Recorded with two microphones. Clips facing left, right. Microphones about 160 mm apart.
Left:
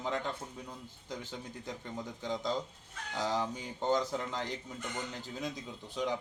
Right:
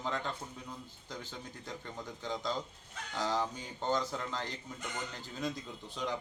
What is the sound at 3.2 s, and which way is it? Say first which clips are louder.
A man's voice: left 1 dB; 15° left (ahead or behind).